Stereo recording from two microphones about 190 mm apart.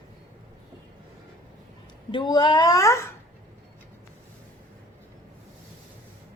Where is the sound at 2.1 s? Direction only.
25° left (ahead or behind).